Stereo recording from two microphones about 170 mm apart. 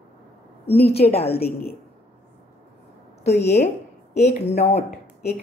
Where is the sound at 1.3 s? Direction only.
65° left (ahead or behind).